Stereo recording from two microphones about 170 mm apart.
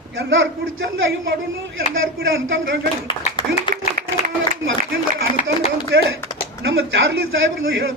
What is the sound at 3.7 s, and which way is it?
Applause, 30° left (ahead or behind).